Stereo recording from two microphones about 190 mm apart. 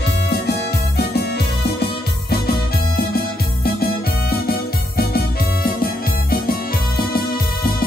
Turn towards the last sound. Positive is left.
turn(degrees=50)  # may be behind; listen again after turning